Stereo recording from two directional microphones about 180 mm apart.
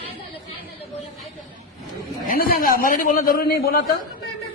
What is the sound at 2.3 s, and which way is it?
A man's voice, 55° left (ahead or behind).